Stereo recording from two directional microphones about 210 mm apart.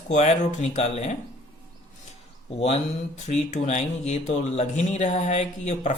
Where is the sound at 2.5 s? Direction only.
30° left (ahead or behind).